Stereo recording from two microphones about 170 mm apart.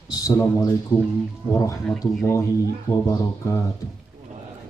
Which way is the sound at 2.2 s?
20° left (ahead or behind).